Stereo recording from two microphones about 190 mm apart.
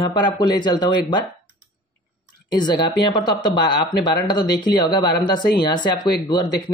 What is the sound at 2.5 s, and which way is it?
Speech, 25° left (ahead or behind).